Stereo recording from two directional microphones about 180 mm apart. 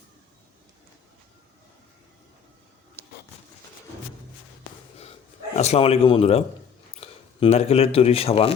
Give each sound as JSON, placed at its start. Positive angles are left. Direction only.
{"t": 5.5, "sound": "speech", "side_deg": 35}